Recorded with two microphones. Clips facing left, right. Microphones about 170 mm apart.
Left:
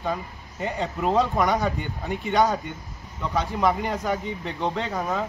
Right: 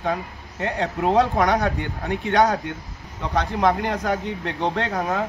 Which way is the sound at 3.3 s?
5° left (ahead or behind).